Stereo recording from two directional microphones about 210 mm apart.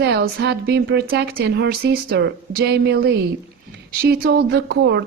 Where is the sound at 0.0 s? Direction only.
50° right (ahead or behind).